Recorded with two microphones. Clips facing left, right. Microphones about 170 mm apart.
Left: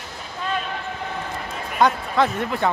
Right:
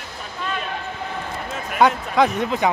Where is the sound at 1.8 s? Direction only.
15° right (ahead or behind).